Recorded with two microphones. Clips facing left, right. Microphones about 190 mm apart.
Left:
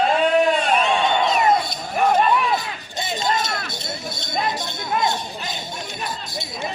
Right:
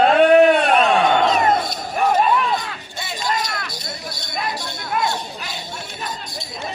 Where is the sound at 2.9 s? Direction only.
20° left (ahead or behind).